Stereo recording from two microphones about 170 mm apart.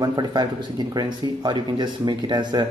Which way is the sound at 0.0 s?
25° right (ahead or behind).